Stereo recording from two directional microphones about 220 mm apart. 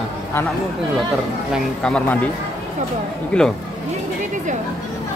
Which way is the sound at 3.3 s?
5° left (ahead or behind).